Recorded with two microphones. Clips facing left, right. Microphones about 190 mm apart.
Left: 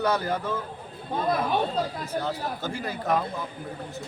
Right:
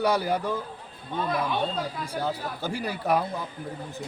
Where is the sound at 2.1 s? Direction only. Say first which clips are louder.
Left 1 dB; 10° right (ahead or behind).